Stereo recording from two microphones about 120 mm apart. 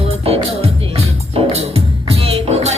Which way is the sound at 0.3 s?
55° right (ahead or behind).